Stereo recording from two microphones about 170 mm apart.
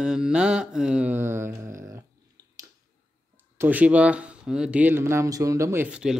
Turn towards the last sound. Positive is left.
turn(degrees=-5)  # may be behind; listen again after turning